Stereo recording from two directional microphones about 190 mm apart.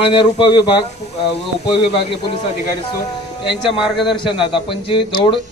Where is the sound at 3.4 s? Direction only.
25° left (ahead or behind).